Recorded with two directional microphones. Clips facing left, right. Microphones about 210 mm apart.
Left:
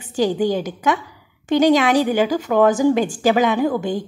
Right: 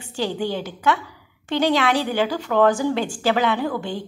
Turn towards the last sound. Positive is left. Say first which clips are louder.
# left 5 dB
turn(degrees=15)  # may be behind; listen again after turning